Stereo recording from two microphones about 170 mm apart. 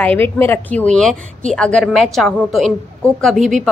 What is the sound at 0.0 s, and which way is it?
A woman's voice, 10° left (ahead or behind).